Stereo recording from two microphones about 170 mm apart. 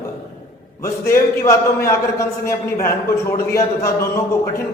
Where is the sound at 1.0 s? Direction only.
15° left (ahead or behind).